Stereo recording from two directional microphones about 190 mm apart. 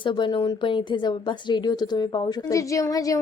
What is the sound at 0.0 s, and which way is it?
Speech, 25° left (ahead or behind).